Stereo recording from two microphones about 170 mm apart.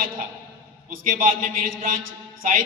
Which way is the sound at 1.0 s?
55° right (ahead or behind).